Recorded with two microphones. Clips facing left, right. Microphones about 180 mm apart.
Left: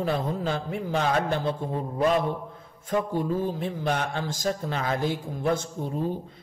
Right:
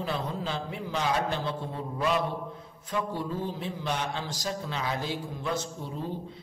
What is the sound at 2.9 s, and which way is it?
A woman's voice, 50° left (ahead or behind).